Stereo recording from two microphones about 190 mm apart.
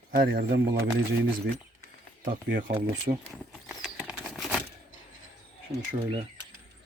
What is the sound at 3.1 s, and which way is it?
Speech, 35° right (ahead or behind).